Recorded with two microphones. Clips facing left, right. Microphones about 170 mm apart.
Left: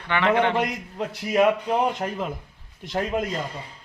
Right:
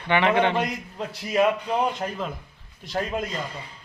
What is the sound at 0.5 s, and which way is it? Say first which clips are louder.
Speech: left 1 dB; 15° left (ahead or behind).